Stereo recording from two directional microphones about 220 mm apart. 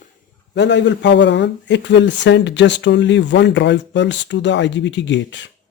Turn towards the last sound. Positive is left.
turn(degrees=55)  # may be behind; listen again after turning